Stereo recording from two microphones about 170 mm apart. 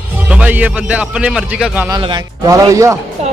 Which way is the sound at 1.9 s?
20° right (ahead or behind).